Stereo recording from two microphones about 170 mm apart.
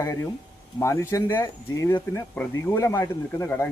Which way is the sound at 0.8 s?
15° left (ahead or behind).